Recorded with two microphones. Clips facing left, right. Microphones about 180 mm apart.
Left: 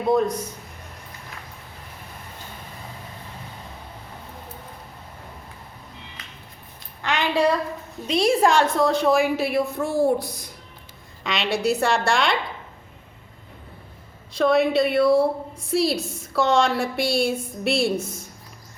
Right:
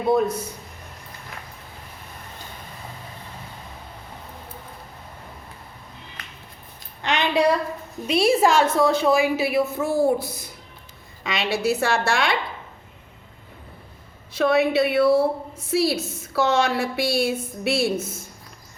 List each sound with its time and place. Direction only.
0.1 s a man's voice: 5° right (ahead or behind)
7.0 s a sound: 20° right (ahead or behind)
8.0 s a woman's voice: 5° right (ahead or behind)
14.3 s a woman's voice: 5° right (ahead or behind)